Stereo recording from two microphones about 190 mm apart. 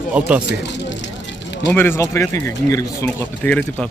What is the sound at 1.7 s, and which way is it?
Speech, 10° left (ahead or behind).